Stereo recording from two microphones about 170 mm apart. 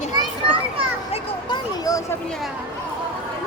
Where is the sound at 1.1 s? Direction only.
25° left (ahead or behind).